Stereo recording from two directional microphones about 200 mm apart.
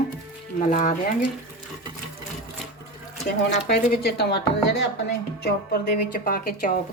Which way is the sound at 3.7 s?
50° left (ahead or behind).